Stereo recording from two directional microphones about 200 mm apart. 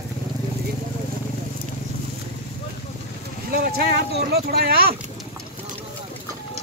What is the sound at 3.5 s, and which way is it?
Speech, 50° right (ahead or behind).